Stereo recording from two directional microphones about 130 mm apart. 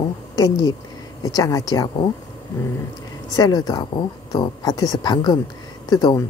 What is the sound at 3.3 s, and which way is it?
Speech, 30° left (ahead or behind).